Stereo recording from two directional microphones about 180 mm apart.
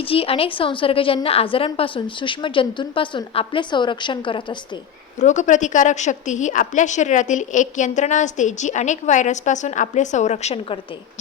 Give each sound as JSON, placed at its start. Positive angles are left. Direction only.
{"t": 0.0, "sound": "a woman's voice", "side_deg": 30}
{"t": 5.2, "sound": "a woman's voice", "side_deg": 40}